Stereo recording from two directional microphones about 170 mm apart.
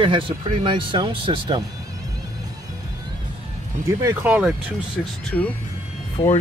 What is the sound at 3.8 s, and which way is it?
Speech, 50° right (ahead or behind).